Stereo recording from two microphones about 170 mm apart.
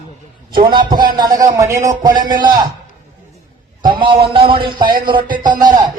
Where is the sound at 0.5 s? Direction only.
25° right (ahead or behind).